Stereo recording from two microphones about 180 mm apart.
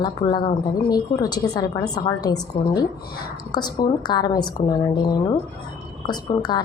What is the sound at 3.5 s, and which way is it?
A woman's voice, 20° left (ahead or behind).